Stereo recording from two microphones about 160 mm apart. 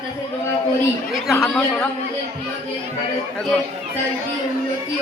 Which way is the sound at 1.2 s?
5° left (ahead or behind).